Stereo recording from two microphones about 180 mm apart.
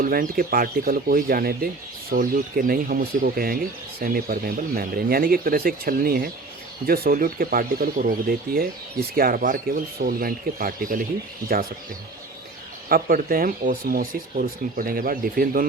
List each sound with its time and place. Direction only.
0.0 s speech: 55° right (ahead or behind)
9.1 s speech: 55° right (ahead or behind)
12.9 s speech: 55° right (ahead or behind)